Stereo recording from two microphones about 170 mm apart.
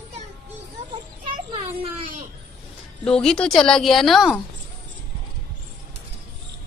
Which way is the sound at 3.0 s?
5° left (ahead or behind).